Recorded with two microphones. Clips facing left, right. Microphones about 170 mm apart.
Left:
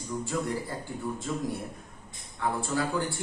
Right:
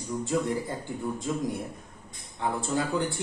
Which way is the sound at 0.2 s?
20° right (ahead or behind).